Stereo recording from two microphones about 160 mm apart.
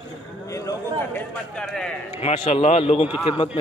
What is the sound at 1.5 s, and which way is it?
Speech, 5° left (ahead or behind).